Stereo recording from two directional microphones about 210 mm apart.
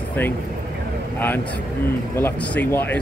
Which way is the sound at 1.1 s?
10° left (ahead or behind).